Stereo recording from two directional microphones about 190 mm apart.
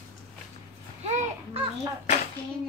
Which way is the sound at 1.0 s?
35° right (ahead or behind).